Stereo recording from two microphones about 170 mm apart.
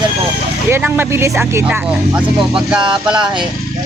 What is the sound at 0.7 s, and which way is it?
Speech, 10° right (ahead or behind).